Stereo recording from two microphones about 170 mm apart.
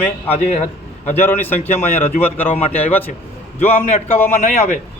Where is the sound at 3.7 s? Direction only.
40° left (ahead or behind).